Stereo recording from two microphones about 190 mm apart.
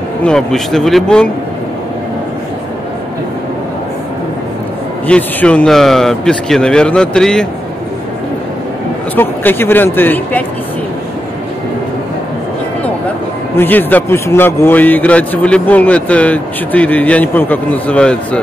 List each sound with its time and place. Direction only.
0.2 s a man's voice: 5° left (ahead or behind)
5.0 s a man's voice: 5° left (ahead or behind)
9.1 s a man's voice: 10° left (ahead or behind)
13.6 s a man's voice: 10° left (ahead or behind)